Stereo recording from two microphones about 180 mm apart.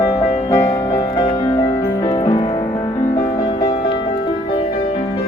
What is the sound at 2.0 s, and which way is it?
Music, 25° left (ahead or behind).